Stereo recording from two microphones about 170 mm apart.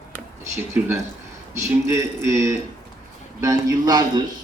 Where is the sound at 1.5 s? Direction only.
15° right (ahead or behind).